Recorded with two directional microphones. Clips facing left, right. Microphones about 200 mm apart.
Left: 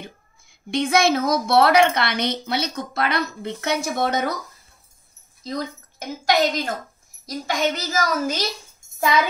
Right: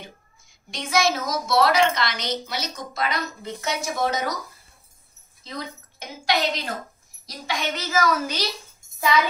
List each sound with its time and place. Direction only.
0.0 s a woman's voice: 55° left (ahead or behind)
5.4 s a woman's voice: 40° left (ahead or behind)